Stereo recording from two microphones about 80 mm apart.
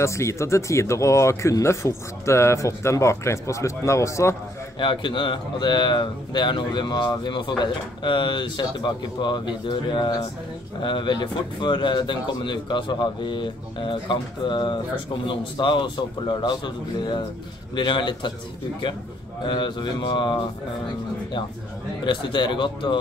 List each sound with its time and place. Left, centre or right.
0.0 s speech: left
4.7 s speech: left
10.8 s speech: left
15.2 s speech: left
17.7 s speech: left
19.4 s speech: left
22.0 s speech: left